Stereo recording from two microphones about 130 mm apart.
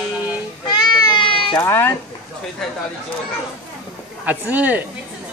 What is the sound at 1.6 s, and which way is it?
Speech, 15° left (ahead or behind).